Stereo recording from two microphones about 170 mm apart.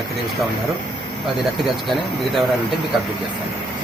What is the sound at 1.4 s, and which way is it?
Speech, centre (ahead or behind).